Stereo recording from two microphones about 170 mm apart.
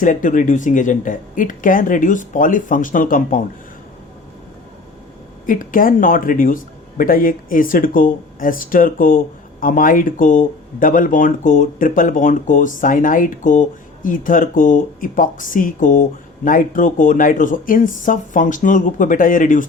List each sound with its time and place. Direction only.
0.0 s speech: 50° left (ahead or behind)
5.5 s speech: 55° left (ahead or behind)